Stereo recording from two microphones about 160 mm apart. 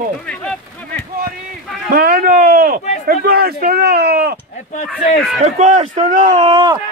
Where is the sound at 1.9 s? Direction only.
65° right (ahead or behind).